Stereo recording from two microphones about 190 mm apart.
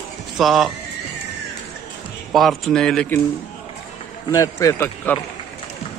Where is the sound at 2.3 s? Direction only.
Centre (ahead or behind).